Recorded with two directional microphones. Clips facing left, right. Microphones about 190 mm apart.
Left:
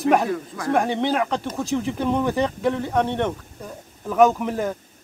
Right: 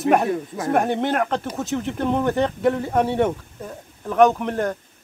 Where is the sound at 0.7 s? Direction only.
Centre (ahead or behind).